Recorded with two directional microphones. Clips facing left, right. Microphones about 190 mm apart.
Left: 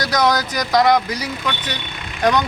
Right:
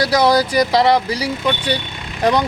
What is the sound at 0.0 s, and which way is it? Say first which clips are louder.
Speech: right 4 dB; 30° right (ahead or behind).